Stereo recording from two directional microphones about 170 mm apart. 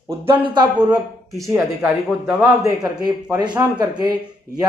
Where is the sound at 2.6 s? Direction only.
25° right (ahead or behind).